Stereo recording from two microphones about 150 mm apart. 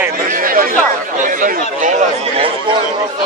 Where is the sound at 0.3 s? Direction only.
70° right (ahead or behind).